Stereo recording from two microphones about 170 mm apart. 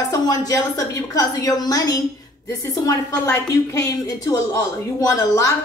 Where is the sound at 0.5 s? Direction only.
20° left (ahead or behind).